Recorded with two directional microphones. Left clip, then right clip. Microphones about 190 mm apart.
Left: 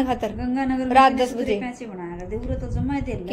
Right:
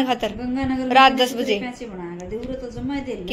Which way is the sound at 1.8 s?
10° left (ahead or behind).